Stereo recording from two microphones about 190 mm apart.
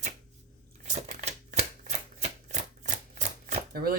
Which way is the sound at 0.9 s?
40° right (ahead or behind).